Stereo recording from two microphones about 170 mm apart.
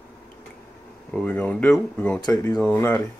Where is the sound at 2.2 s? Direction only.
20° left (ahead or behind).